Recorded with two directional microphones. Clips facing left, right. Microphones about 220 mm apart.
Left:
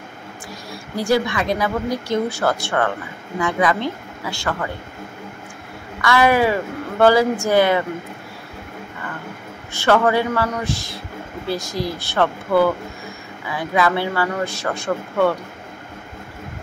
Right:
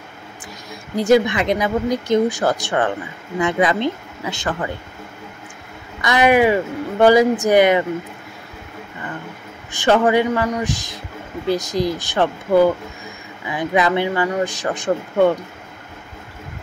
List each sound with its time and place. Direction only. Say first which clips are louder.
0.7 s speech: right 5 dB; 20° right (ahead or behind)
5.9 s speech: right 2 dB; 20° right (ahead or behind)
9.7 s speech: right 1 dB; 15° right (ahead or behind)